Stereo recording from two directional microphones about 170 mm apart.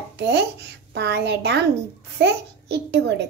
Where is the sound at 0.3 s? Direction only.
75° right (ahead or behind).